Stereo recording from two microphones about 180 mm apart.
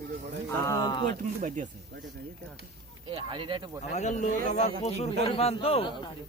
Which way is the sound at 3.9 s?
40° left (ahead or behind).